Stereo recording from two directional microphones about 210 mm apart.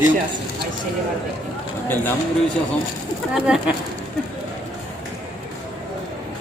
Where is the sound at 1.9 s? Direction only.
10° left (ahead or behind).